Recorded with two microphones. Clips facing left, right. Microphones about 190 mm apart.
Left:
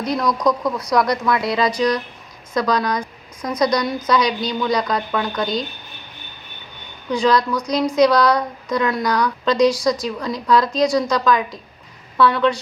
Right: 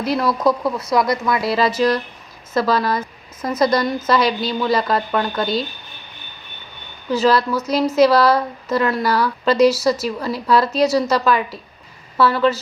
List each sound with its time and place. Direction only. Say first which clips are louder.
0.0 s a woman's voice: right 1 dB; 5° right (ahead or behind)
7.1 s a woman's voice: right 1 dB; 5° right (ahead or behind)